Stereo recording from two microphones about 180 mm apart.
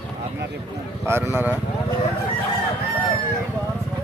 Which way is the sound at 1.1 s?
15° right (ahead or behind).